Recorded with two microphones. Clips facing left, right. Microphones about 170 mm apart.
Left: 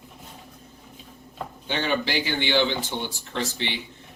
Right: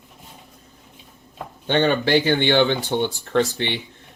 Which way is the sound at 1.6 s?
55° right (ahead or behind).